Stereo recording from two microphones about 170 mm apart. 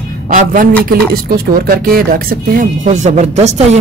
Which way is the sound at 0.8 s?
65° right (ahead or behind).